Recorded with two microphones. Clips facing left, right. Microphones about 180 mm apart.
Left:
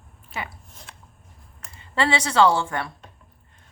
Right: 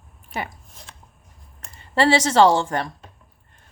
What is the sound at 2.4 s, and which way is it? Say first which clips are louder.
Speech: right 1 dB; 30° right (ahead or behind).